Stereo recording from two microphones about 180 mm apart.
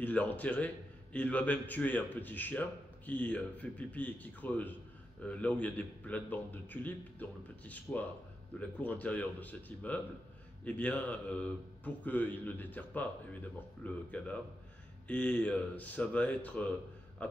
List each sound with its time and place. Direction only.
0.0 s a man's voice: 10° left (ahead or behind)